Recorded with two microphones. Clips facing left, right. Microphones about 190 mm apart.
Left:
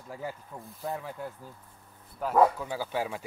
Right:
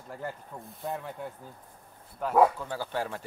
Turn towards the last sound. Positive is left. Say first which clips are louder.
# left 1 dB
turn(degrees=10)  # may be behind; listen again after turning